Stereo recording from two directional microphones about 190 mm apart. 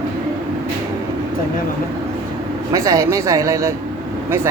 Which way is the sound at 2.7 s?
15° right (ahead or behind).